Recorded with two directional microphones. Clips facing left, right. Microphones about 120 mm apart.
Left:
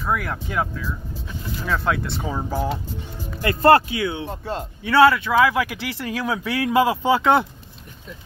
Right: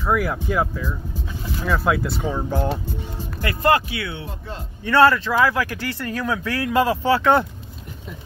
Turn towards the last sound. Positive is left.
turn(degrees=15)  # may be behind; listen again after turning